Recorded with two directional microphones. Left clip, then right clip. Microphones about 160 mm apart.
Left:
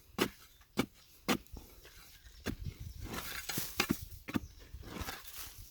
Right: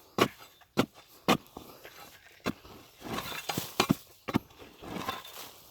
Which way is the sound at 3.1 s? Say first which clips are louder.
Right 6 dB; 50° right (ahead or behind).